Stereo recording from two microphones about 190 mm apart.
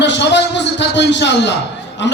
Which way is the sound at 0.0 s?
65° left (ahead or behind).